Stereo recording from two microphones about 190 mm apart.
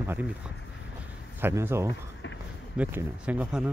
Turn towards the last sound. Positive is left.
turn(degrees=-5)  # may be behind; listen again after turning